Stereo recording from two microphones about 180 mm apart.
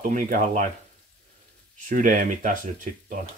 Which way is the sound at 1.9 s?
50° right (ahead or behind).